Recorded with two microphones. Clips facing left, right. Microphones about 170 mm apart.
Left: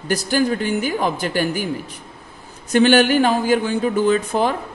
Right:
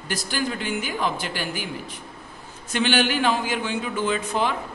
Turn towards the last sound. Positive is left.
turn(degrees=40)  # may be behind; listen again after turning